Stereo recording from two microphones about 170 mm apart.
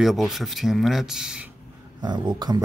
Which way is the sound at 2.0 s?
25° right (ahead or behind).